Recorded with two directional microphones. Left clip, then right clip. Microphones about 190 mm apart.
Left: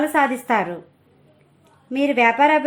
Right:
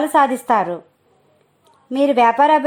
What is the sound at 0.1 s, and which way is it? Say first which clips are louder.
Speech: right 4 dB; 45° right (ahead or behind).